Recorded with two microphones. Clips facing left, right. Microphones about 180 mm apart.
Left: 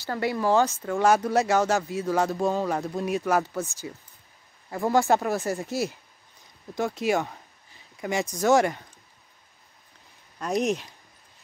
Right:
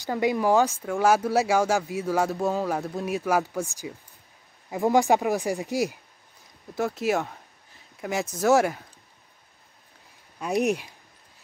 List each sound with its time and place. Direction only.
0.0 s speech: 15° right (ahead or behind)
6.7 s speech: centre (ahead or behind)
10.4 s speech: 10° right (ahead or behind)